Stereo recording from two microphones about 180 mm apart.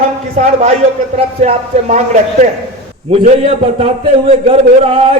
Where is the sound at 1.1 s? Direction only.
40° right (ahead or behind).